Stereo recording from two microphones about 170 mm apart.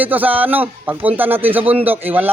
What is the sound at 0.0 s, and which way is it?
A man's voice, 10° right (ahead or behind).